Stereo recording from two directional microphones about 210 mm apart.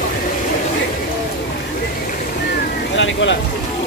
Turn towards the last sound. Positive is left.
turn(degrees=60)  # may be behind; listen again after turning